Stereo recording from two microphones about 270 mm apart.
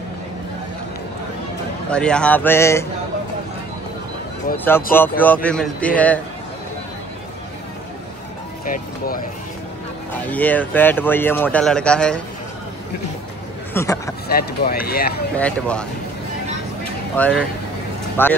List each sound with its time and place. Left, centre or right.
1.9 s speech: centre
4.6 s speech: centre
8.6 s speech: left
10.2 s speech: centre
13.7 s a man's voice: centre
14.3 s speech: left
15.3 s speech: centre
17.2 s speech: centre